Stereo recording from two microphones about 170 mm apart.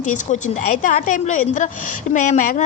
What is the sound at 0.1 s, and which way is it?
Speech, 45° left (ahead or behind).